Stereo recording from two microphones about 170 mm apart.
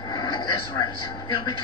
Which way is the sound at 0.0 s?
25° left (ahead or behind).